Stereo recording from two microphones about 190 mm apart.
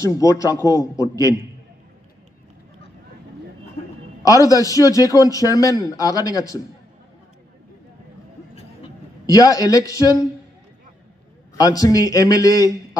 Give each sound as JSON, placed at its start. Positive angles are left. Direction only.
{"t": 0.0, "sound": "a man's voice", "side_deg": 20}
{"t": 4.2, "sound": "a man's voice", "side_deg": 20}
{"t": 9.2, "sound": "a man's voice", "side_deg": 20}
{"t": 11.5, "sound": "a man's voice", "side_deg": 20}